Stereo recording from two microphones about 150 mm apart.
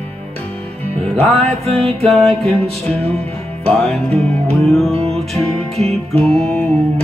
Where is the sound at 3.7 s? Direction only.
Centre (ahead or behind).